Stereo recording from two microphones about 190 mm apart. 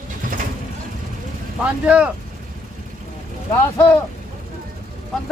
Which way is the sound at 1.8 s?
5° right (ahead or behind).